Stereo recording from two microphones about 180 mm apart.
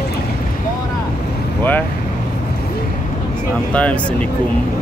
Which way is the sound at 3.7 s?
5° left (ahead or behind).